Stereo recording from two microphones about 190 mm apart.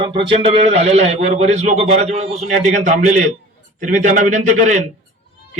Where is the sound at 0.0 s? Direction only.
25° right (ahead or behind).